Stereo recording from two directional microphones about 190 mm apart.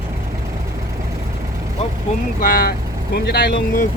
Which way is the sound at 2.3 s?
50° left (ahead or behind).